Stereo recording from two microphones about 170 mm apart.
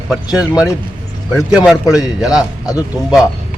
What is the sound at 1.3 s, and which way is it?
Speech, 5° right (ahead or behind).